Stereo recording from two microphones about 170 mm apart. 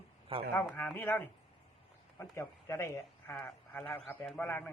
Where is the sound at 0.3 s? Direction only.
30° right (ahead or behind).